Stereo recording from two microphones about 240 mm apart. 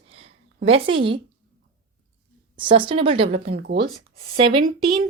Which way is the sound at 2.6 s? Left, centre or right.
Right.